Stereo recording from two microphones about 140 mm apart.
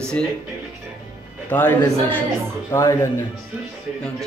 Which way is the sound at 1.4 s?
15° left (ahead or behind).